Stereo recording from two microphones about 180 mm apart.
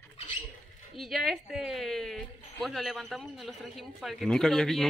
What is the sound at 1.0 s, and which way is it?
Speech, centre (ahead or behind).